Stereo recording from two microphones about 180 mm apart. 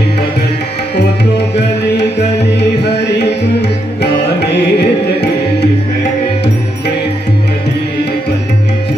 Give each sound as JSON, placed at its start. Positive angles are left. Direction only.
{"t": 2.0, "sound": "music", "side_deg": 70}